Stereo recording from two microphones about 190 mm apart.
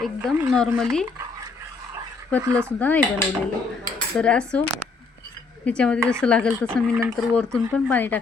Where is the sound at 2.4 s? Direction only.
15° right (ahead or behind).